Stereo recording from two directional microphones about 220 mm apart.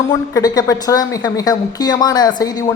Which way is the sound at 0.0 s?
15° left (ahead or behind).